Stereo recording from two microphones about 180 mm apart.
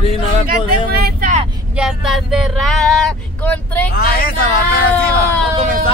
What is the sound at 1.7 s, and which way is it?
Speech, 5° right (ahead or behind).